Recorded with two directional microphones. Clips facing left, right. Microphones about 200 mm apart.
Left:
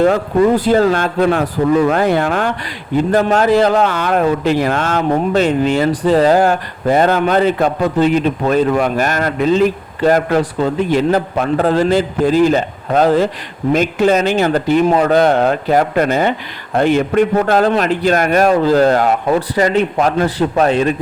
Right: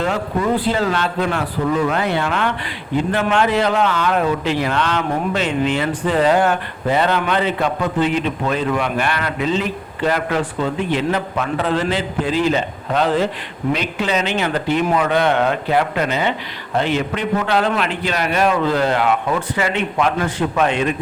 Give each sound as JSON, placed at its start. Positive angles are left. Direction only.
{"t": 0.0, "sound": "a man's voice", "side_deg": 45}